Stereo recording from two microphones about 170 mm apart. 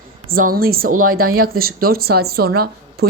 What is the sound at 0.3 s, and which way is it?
Speech, 60° right (ahead or behind).